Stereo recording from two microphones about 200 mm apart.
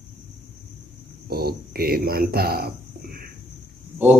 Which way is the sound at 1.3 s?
50° right (ahead or behind).